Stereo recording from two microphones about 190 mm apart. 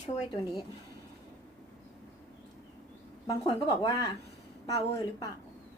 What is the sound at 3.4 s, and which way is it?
A woman's voice, 20° left (ahead or behind).